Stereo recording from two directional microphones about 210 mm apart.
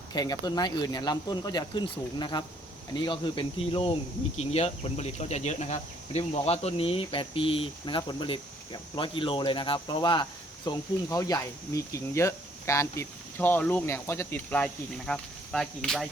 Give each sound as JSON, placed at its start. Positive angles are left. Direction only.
{"t": 0.1, "sound": "speech", "side_deg": 20}